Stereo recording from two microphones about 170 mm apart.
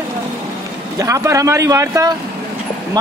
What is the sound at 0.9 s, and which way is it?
A man's voice, 20° right (ahead or behind).